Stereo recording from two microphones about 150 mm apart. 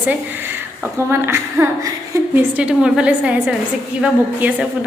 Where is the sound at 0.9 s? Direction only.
15° right (ahead or behind).